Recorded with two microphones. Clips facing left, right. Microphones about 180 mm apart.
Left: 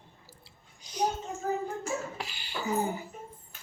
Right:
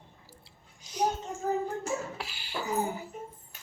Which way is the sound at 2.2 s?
5° right (ahead or behind).